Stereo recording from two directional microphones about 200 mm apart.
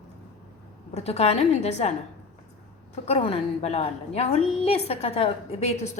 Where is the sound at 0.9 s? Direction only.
30° left (ahead or behind).